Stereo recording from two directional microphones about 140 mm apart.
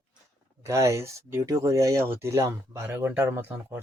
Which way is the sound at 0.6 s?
20° right (ahead or behind).